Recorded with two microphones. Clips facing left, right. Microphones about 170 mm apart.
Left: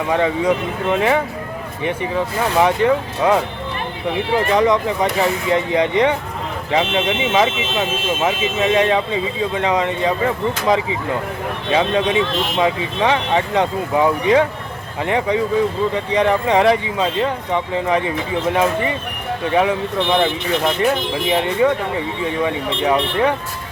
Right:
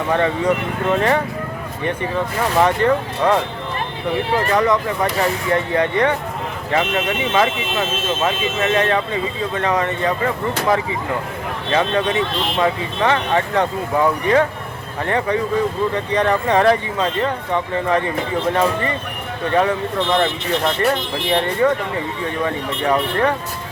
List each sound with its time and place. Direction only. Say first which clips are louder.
0.1 s speech: left 1 dB; 10° left (ahead or behind)
4.5 s speech: left 2 dB; 20° left (ahead or behind)
11.7 s speech: left 1 dB; 15° left (ahead or behind)